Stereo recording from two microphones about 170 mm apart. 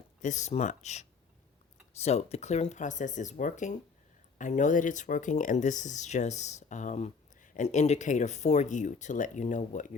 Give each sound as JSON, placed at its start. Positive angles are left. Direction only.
{"t": 0.2, "sound": "speech", "side_deg": 45}